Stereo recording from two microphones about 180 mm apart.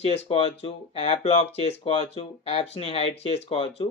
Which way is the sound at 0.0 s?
35° left (ahead or behind).